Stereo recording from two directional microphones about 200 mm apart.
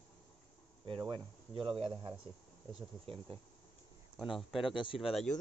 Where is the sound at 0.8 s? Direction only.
25° right (ahead or behind).